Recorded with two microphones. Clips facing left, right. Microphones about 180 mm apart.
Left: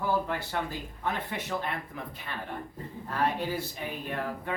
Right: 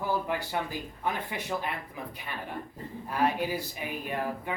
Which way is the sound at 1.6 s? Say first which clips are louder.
Even; 10° right (ahead or behind).